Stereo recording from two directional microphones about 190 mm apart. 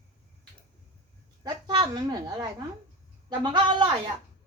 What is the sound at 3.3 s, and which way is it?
Speech, 25° right (ahead or behind).